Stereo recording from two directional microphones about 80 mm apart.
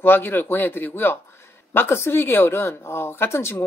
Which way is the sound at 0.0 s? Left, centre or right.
Left.